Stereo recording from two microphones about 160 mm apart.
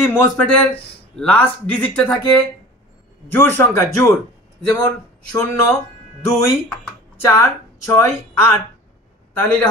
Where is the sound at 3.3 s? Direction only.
15° left (ahead or behind).